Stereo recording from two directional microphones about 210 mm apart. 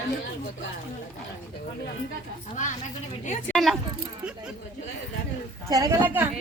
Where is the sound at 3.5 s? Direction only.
Centre (ahead or behind).